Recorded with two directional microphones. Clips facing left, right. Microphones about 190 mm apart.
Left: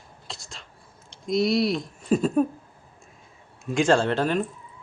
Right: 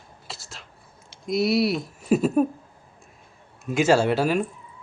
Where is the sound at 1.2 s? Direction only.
Centre (ahead or behind).